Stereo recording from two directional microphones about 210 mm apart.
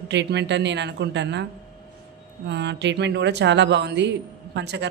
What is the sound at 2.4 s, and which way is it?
Speech, 55° right (ahead or behind).